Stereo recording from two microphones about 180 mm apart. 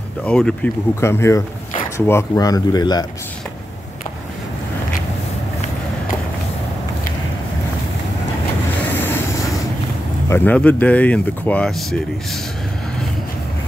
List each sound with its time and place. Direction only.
0.2 s speech: 5° left (ahead or behind); by 3.1 s 20° left (ahead or behind)
8.9 s vehicle: 10° left (ahead or behind)
10.2 s speech: 10° left (ahead or behind)